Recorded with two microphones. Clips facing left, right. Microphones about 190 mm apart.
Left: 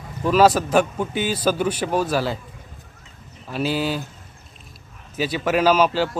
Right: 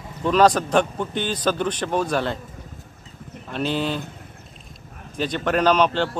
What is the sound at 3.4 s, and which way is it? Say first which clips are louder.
Speech: left 1 dB; 5° left (ahead or behind).